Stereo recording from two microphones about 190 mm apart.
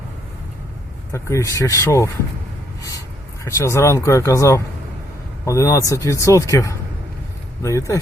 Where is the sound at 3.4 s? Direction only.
15° left (ahead or behind).